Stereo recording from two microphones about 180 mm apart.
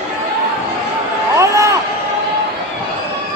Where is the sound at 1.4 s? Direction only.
15° right (ahead or behind).